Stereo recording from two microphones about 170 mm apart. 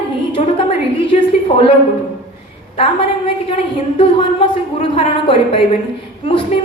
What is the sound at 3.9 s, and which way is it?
A woman's voice, 30° left (ahead or behind).